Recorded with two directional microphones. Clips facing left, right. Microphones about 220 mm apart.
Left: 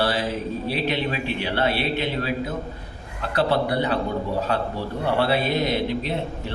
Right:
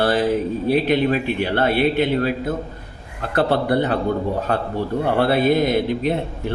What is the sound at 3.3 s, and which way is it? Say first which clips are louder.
A man's voice: right 4 dB; 50° right (ahead or behind).